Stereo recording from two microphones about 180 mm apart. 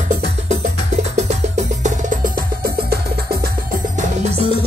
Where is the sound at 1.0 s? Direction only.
40° right (ahead or behind).